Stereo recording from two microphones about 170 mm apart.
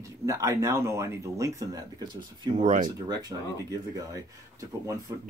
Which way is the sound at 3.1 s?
20° right (ahead or behind).